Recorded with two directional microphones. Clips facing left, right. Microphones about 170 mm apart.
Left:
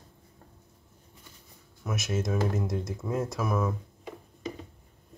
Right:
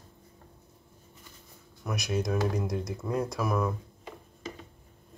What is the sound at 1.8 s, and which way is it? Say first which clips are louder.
Speech: even; centre (ahead or behind).